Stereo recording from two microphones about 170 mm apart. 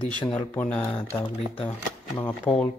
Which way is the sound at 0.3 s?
10° left (ahead or behind).